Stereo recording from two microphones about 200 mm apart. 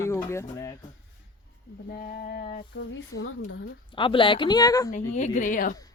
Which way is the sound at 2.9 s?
80° left.